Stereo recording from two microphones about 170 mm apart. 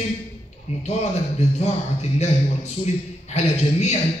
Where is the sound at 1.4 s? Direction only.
40° left (ahead or behind).